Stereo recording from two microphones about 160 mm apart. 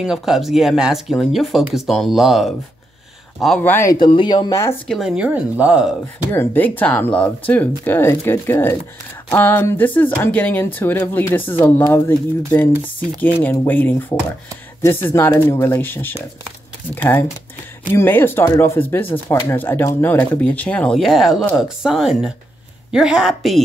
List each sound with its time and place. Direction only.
0.0 s speech: 5° right (ahead or behind)
3.9 s speech: 30° left (ahead or behind)
4.8 s speech: centre (ahead or behind)
6.3 s speech: 10° left (ahead or behind)